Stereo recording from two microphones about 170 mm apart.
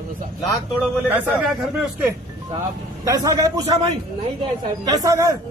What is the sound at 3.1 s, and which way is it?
A man's voice, 20° right (ahead or behind).